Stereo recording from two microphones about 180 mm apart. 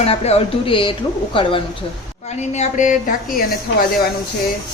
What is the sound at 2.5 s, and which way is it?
A woman's voice, 40° left (ahead or behind).